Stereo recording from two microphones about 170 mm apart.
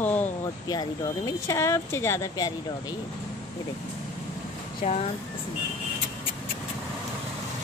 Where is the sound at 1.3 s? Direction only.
15° left (ahead or behind).